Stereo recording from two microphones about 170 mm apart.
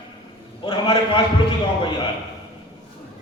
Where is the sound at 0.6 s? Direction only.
30° left (ahead or behind).